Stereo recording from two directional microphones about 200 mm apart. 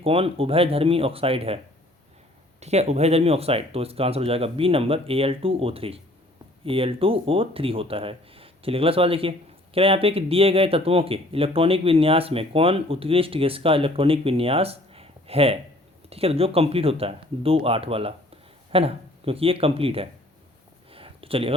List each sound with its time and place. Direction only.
0.0 s speech: 30° right (ahead or behind)
2.6 s speech: 35° right (ahead or behind)
20.9 s a sound: 25° right (ahead or behind)